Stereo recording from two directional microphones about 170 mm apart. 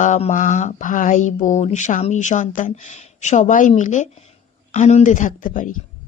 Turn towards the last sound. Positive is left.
turn(degrees=50)  # may be behind; listen again after turning